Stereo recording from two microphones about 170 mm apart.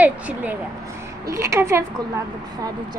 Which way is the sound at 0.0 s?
10° right (ahead or behind).